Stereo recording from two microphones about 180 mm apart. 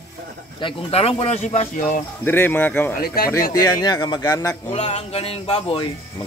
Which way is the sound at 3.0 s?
55° left (ahead or behind).